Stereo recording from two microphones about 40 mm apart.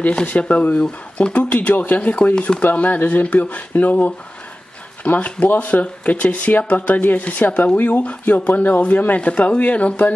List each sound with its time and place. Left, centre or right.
0.3 s speech: left
2.0 s speech: left
2.6 s speech: left
9.2 s speech: left